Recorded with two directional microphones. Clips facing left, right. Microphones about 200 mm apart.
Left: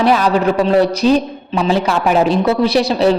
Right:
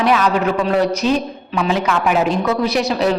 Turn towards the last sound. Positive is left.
turn(degrees=30)  # may be behind; listen again after turning